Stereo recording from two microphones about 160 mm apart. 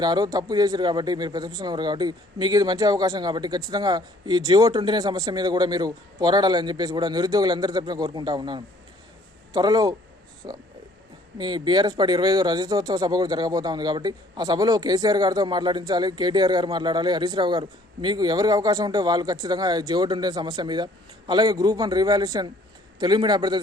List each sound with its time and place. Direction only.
0.0 s speech: 25° right (ahead or behind)